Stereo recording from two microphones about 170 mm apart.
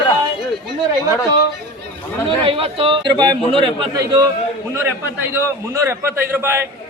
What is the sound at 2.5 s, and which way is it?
A man's voice, 35° right (ahead or behind).